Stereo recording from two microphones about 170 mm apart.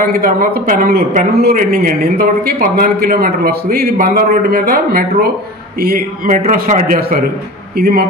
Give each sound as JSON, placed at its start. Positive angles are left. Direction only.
{"t": 0.0, "sound": "a man's voice", "side_deg": -60}
{"t": 7.7, "sound": "speech", "side_deg": -65}